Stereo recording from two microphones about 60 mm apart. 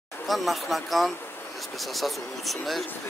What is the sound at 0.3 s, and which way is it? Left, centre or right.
A man's voice, centre.